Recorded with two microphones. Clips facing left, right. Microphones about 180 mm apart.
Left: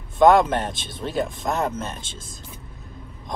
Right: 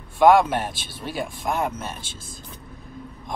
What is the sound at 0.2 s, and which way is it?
Speech, 10° right (ahead or behind).